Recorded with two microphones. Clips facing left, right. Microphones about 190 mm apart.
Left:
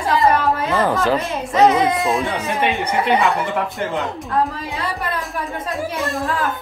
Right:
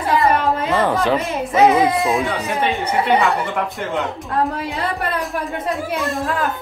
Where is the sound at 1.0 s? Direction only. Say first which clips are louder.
Right 1 dB; centre (ahead or behind).